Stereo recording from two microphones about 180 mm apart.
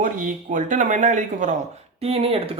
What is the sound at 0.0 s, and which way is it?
Speech, 45° right (ahead or behind).